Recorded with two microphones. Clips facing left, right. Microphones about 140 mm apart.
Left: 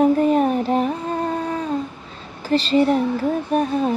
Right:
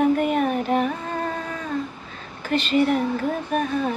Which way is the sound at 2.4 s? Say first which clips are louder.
Left 3 dB; 35° left (ahead or behind).